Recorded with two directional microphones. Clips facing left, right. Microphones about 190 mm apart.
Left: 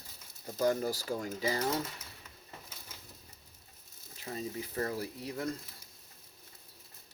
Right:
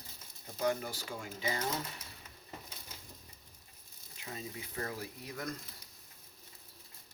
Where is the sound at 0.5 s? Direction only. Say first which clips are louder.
Left 4 dB; 40° left (ahead or behind).